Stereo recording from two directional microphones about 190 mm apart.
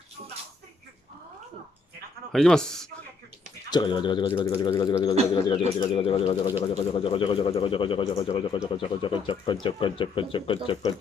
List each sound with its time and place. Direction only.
2.3 s speech: 5° left (ahead or behind)
3.7 s speech: 25° left (ahead or behind)